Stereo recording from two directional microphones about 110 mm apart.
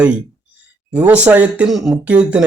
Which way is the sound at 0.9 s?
15° right (ahead or behind).